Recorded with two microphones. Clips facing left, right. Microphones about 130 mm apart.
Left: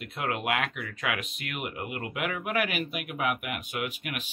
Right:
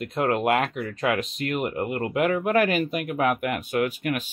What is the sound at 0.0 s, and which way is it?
Speech, 40° right (ahead or behind).